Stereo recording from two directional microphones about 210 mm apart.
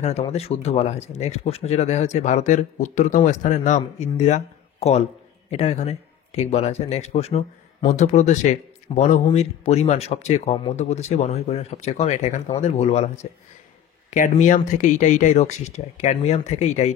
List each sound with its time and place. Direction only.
0.0 s speech: 30° left (ahead or behind)